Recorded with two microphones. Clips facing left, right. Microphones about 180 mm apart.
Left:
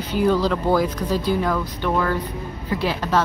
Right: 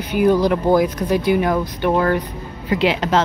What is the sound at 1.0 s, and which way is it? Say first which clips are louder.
Speech: right 4 dB; 65° right (ahead or behind).